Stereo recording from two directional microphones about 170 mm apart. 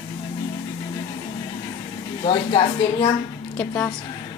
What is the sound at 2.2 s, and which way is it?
Speech, 30° left (ahead or behind).